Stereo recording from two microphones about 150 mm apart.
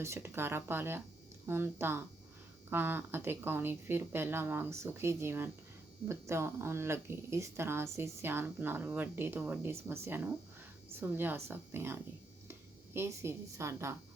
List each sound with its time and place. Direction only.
0.0 s a woman's voice: 15° right (ahead or behind)